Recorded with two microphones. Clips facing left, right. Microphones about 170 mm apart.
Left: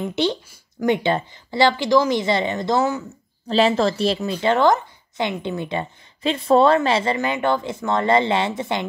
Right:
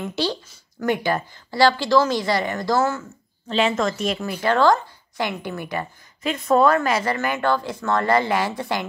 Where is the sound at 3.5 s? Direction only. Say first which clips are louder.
Left 3 dB; 35° left (ahead or behind).